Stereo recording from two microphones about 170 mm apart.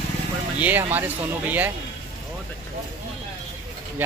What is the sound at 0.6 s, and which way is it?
Speech, 10° right (ahead or behind).